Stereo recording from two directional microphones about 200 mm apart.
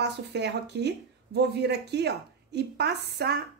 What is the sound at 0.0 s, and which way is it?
Speech, 55° right (ahead or behind).